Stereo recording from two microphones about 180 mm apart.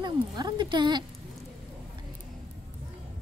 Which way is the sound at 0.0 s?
25° right (ahead or behind).